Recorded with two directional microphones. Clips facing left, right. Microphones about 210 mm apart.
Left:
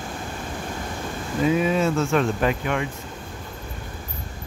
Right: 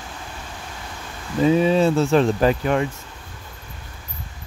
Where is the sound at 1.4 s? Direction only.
30° right (ahead or behind).